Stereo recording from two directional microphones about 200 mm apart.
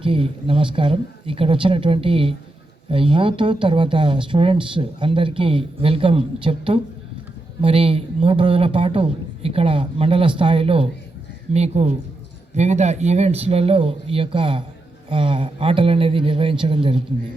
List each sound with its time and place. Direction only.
0.0 s a man's voice: 25° right (ahead or behind)